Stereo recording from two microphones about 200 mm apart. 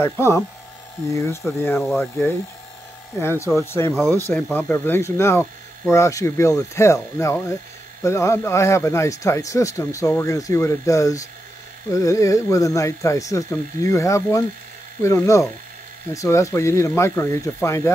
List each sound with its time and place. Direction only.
0.0 s speech: 15° left (ahead or behind)